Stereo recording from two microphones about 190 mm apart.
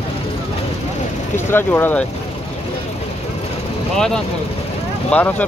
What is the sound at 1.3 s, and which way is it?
Speech, 10° left (ahead or behind).